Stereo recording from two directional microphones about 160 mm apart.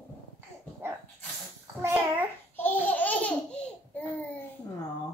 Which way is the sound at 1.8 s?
15° right (ahead or behind).